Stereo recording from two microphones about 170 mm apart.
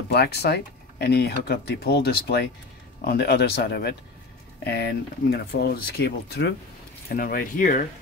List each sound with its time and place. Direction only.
0.1 s speech: 70° left (ahead or behind)
7.1 s speech: 60° left (ahead or behind)